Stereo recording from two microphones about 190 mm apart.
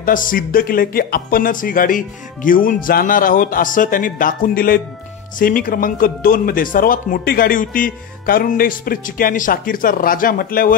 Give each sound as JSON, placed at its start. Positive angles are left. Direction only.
{"t": 0.0, "sound": "a man's voice", "side_deg": 45}